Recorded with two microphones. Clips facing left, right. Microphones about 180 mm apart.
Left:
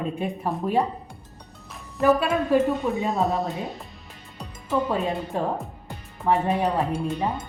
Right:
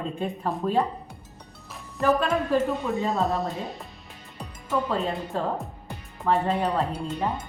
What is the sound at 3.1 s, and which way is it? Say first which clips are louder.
Speech: left 1 dB; centre (ahead or behind).